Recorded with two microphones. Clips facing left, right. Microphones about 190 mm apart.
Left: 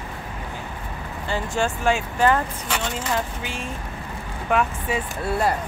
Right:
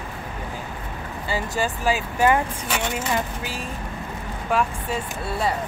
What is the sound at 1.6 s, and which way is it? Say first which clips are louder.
Speech: left 2 dB; 5° right (ahead or behind).